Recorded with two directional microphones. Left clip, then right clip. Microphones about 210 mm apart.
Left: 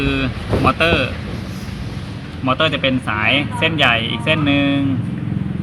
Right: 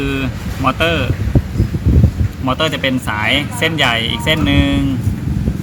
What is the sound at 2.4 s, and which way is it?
A man's voice, 15° right (ahead or behind).